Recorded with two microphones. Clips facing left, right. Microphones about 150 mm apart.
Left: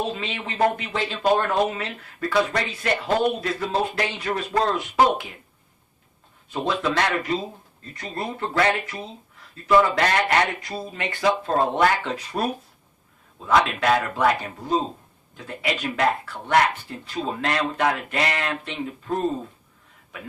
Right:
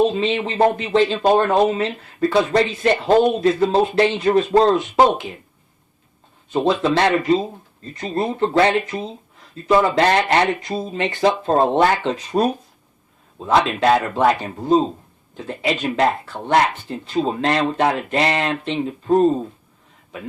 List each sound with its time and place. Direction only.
0.0 s speech: 25° right (ahead or behind)
6.5 s speech: 25° right (ahead or behind)